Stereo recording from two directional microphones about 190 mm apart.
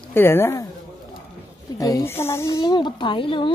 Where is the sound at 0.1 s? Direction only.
10° left (ahead or behind).